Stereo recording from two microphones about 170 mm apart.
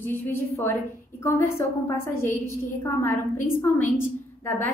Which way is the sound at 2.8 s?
15° left (ahead or behind).